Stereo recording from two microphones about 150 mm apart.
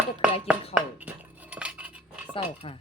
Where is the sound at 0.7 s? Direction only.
10° right (ahead or behind).